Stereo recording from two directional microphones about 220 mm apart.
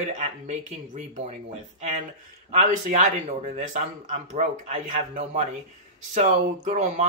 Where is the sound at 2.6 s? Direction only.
35° right (ahead or behind).